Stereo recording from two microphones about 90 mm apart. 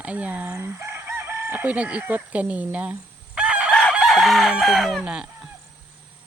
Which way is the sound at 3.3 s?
10° right (ahead or behind).